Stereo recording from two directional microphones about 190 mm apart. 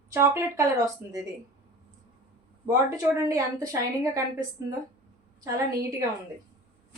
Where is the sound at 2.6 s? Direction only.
15° right (ahead or behind).